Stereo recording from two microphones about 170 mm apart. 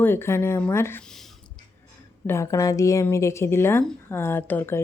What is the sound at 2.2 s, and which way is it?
A woman's voice, 15° left (ahead or behind).